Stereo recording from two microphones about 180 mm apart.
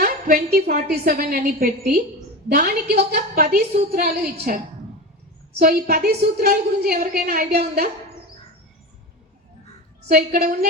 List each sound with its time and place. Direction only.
0.0 s a woman's voice: 55° right (ahead or behind)
10.1 s a woman's voice: 55° right (ahead or behind)